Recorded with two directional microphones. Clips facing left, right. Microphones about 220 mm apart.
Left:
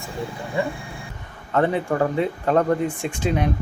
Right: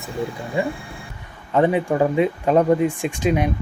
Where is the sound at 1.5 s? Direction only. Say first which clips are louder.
Right 3 dB; 15° right (ahead or behind).